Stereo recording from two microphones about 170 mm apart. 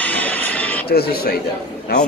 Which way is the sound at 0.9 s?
65° left (ahead or behind).